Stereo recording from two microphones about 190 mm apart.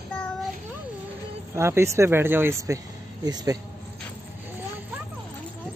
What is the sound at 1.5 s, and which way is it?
Speech, 15° right (ahead or behind).